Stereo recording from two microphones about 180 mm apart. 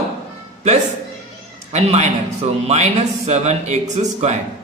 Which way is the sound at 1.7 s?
35° right (ahead or behind).